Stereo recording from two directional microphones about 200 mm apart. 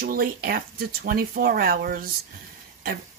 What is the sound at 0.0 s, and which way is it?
Speech, 45° right (ahead or behind).